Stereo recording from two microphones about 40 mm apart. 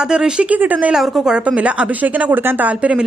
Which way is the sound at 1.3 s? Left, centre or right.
Right.